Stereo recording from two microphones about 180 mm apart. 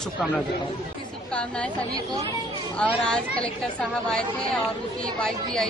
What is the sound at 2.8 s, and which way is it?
Speech, 5° left (ahead or behind).